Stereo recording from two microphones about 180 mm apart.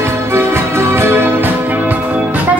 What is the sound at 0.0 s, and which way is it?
Music, 15° right (ahead or behind).